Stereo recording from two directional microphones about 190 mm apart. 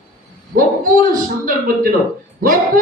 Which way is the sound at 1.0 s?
45° right (ahead or behind).